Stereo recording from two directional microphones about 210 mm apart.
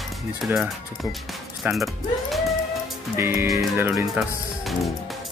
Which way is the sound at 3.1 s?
10° right (ahead or behind).